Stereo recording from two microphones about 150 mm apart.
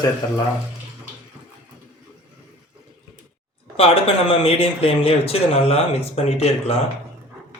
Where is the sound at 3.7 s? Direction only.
40° left (ahead or behind).